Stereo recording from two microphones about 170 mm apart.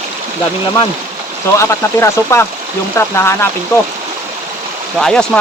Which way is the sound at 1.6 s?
15° left (ahead or behind).